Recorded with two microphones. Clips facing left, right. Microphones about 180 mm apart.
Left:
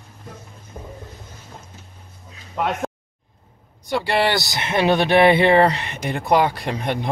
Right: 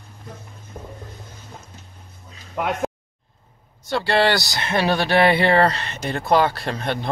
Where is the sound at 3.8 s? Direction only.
15° left (ahead or behind).